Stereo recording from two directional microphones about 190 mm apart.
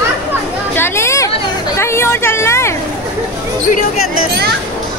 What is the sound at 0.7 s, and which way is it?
Chatter, 15° left (ahead or behind).